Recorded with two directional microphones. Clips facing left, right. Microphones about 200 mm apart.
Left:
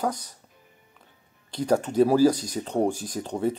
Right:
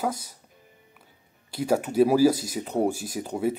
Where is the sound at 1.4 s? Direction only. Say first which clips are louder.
Left 1 dB; 5° right (ahead or behind).